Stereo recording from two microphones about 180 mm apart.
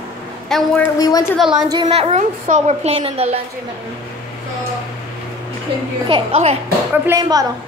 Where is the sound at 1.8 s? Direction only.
35° right (ahead or behind).